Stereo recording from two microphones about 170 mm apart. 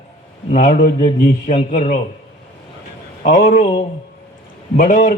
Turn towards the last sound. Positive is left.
turn(degrees=50)  # may be behind; listen again after turning